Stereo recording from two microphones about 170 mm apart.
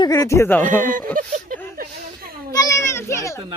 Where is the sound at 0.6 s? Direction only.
50° right (ahead or behind).